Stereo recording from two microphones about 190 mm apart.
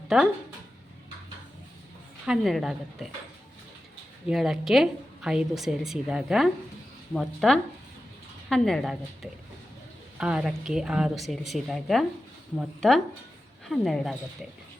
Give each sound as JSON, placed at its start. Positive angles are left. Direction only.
{"t": 0.1, "sound": "a woman's voice", "side_deg": 0}
{"t": 2.2, "sound": "a woman's voice", "side_deg": 0}
{"t": 4.3, "sound": "a woman's voice", "side_deg": 0}